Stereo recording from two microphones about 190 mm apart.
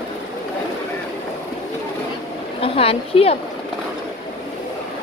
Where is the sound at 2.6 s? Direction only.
30° left (ahead or behind).